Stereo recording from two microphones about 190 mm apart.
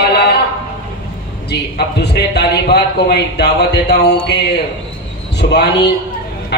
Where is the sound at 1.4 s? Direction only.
60° left (ahead or behind).